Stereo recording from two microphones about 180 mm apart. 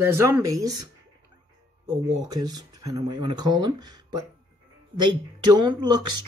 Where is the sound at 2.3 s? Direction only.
20° right (ahead or behind).